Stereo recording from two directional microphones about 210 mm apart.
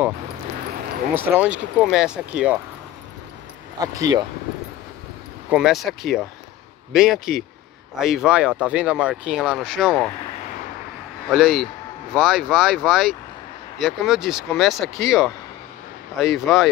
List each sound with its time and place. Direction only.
1.1 s speech: 10° right (ahead or behind)
3.8 s speech: 15° right (ahead or behind)
5.5 s speech: centre (ahead or behind)
11.2 s speech: centre (ahead or behind)